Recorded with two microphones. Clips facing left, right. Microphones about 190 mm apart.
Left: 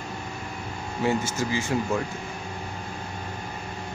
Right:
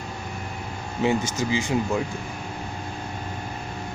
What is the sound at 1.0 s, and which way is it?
Speech, 20° right (ahead or behind).